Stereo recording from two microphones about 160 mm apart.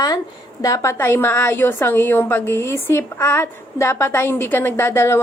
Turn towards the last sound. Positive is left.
turn(degrees=15)  # may be behind; listen again after turning